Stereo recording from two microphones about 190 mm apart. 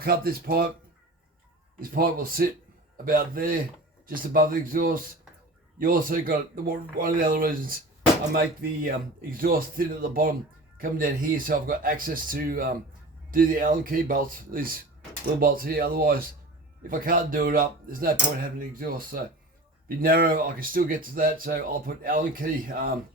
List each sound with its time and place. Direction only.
0.0 s speech: 50° right (ahead or behind)
1.8 s speech: 50° right (ahead or behind)